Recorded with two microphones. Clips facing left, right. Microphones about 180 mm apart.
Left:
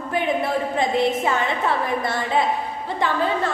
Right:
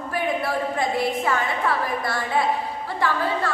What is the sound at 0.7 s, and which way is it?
A woman's voice, 20° left (ahead or behind).